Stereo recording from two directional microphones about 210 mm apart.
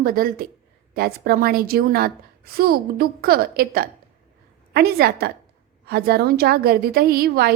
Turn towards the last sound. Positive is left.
turn(degrees=-50)  # may be behind; listen again after turning